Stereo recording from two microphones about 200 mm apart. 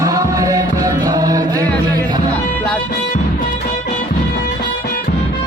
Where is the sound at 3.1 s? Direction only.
40° left (ahead or behind).